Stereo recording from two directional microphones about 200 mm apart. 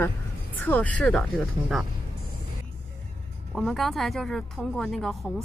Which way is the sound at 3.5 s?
Centre (ahead or behind).